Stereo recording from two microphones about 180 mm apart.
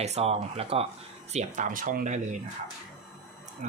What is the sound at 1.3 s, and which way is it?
Speech, 45° right (ahead or behind).